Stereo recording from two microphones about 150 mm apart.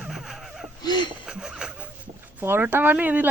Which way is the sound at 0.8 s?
30° left (ahead or behind).